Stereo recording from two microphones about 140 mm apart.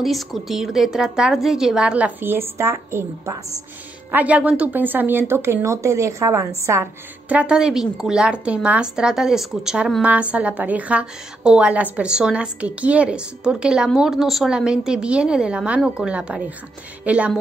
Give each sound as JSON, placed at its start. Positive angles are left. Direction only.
{"t": 0.0, "sound": "a woman's voice", "side_deg": 0}